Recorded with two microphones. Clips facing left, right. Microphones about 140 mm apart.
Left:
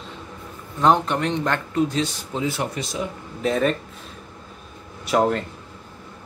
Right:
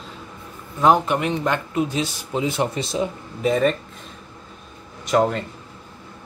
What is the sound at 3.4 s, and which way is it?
Speech, centre (ahead or behind).